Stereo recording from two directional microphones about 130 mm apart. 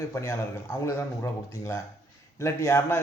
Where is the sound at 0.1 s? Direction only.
20° left (ahead or behind).